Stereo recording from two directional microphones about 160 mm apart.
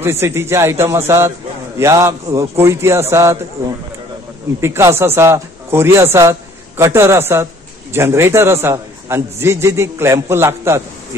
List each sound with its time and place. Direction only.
0.0 s a man's voice: 15° right (ahead or behind)
4.6 s a man's voice: 15° right (ahead or behind)